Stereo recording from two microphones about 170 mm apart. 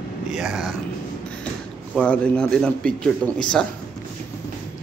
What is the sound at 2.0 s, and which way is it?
A man's voice, 5° left (ahead or behind).